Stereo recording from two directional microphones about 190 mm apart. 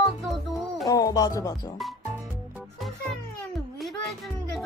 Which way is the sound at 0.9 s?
20° left (ahead or behind).